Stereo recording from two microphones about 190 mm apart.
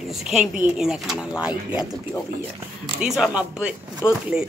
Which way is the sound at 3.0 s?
5° right (ahead or behind).